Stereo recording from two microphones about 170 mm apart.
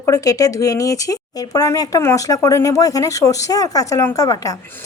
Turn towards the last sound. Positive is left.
turn(degrees=20)  # may be behind; listen again after turning